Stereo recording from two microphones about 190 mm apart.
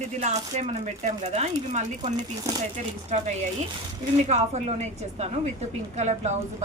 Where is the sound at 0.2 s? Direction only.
35° right (ahead or behind).